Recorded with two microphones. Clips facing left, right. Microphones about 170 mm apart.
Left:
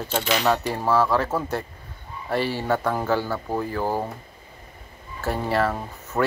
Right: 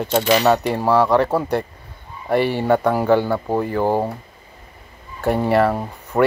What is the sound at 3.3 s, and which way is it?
Speech, 45° right (ahead or behind).